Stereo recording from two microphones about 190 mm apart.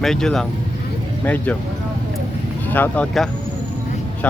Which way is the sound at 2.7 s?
10° left (ahead or behind).